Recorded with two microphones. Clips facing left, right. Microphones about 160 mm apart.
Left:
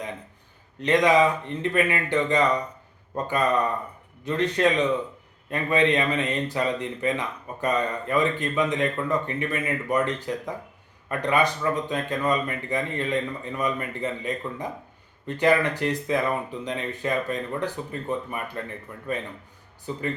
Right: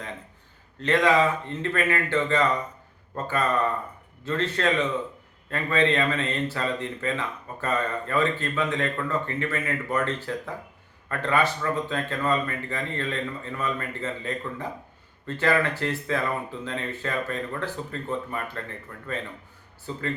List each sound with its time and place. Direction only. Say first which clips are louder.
0.8 s speech: left 2 dB; 15° left (ahead or behind)